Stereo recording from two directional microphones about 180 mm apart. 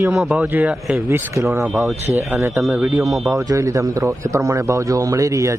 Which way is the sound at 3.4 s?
15° right (ahead or behind).